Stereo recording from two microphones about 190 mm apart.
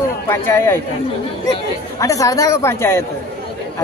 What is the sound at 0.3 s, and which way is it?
Speech, 10° left (ahead or behind).